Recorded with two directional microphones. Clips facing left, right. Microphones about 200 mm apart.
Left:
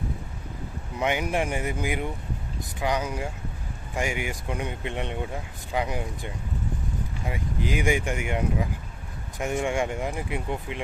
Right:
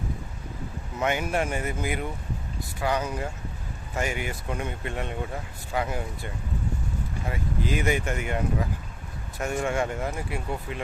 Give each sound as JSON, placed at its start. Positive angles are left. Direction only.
{"t": 0.9, "sound": "speech", "side_deg": 15}